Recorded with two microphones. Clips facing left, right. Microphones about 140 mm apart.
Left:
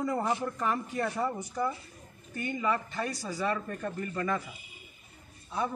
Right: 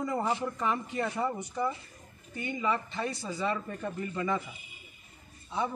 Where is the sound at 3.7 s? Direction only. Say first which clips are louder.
Even; 10° right (ahead or behind).